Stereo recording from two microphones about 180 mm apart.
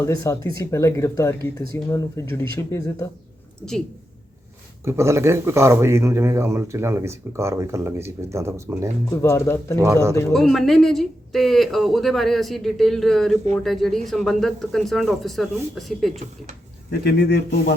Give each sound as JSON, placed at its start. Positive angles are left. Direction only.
{"t": 0.0, "sound": "speech", "side_deg": 20}
{"t": 4.9, "sound": "speech", "side_deg": -15}
{"t": 9.0, "sound": "speech", "side_deg": 15}
{"t": 9.8, "sound": "speech", "side_deg": -15}
{"t": 10.3, "sound": "speech", "side_deg": 0}
{"t": 16.9, "sound": "a man's voice", "side_deg": 60}